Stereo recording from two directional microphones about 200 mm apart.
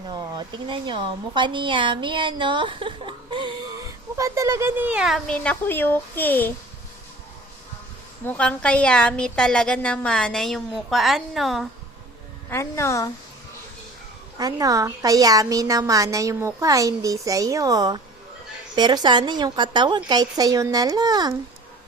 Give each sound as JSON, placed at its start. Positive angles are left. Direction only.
{"t": 0.1, "sound": "a woman's voice", "side_deg": -20}
{"t": 8.2, "sound": "a woman's voice", "side_deg": 5}
{"t": 12.5, "sound": "a woman's voice", "side_deg": 15}
{"t": 14.3, "sound": "a woman's voice", "side_deg": -20}